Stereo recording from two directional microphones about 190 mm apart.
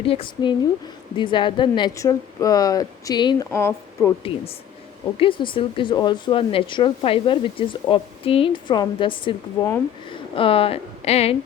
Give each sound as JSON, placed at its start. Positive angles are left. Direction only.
{"t": 0.0, "sound": "speech", "side_deg": 30}
{"t": 5.1, "sound": "a woman's voice", "side_deg": 25}